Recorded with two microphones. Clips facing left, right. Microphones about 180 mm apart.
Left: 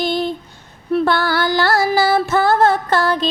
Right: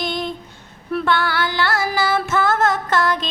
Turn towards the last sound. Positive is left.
turn(degrees=35)  # may be behind; listen again after turning